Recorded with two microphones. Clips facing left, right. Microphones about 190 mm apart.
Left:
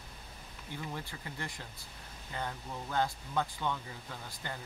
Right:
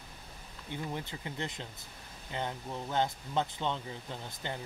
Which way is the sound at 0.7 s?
20° right (ahead or behind).